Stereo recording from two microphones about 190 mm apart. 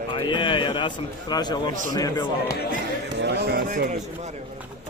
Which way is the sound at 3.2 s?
60° right (ahead or behind).